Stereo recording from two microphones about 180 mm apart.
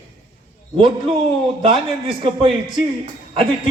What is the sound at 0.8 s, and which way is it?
A man's voice, 30° right (ahead or behind).